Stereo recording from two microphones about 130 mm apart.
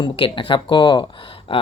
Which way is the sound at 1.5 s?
40° left (ahead or behind).